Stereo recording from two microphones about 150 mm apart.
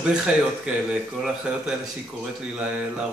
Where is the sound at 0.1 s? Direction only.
5° right (ahead or behind).